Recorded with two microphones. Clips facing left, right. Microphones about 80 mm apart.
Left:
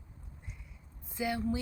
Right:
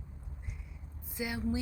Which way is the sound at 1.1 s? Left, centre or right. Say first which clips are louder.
Left 2 dB; centre.